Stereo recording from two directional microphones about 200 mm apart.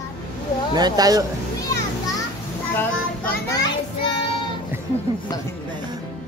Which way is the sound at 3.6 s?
25° left (ahead or behind).